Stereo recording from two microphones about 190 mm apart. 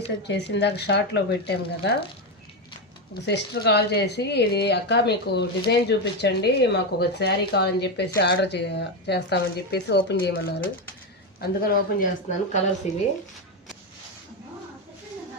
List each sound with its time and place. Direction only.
0.2 s speech: 65° left (ahead or behind)
3.2 s speech: 60° left (ahead or behind)
12.8 s speech: 40° left (ahead or behind)